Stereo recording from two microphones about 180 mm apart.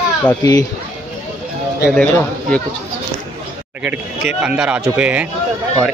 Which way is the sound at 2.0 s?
5° left (ahead or behind).